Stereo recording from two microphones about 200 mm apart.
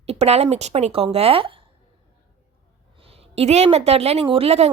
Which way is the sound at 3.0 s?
30° right (ahead or behind).